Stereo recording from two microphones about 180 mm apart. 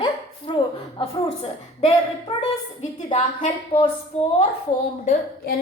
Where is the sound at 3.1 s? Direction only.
35° left (ahead or behind).